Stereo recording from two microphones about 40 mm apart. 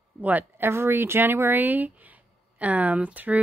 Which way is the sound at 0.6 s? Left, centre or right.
Right.